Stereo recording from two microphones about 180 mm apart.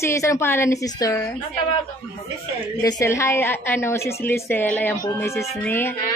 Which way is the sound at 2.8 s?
15° left (ahead or behind).